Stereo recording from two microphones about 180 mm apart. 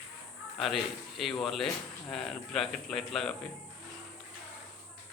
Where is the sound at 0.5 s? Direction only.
Centre (ahead or behind).